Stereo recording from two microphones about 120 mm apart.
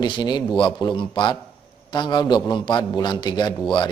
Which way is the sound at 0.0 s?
40° left (ahead or behind).